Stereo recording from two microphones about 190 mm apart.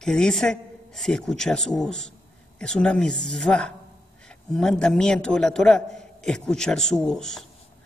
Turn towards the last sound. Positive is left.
turn(degrees=0)  # may be behind; listen again after turning